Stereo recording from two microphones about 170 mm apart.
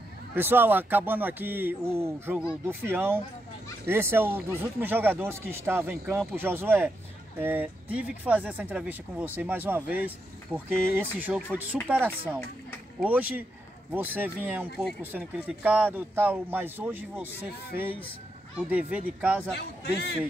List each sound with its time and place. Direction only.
0.3 s speech: 10° right (ahead or behind)
13.0 s speech: 10° right (ahead or behind)
18.7 s speech: 5° right (ahead or behind)
19.8 s a man's voice: 75° left (ahead or behind)